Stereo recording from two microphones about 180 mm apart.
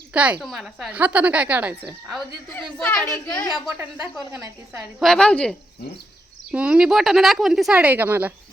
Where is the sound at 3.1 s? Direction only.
20° left (ahead or behind).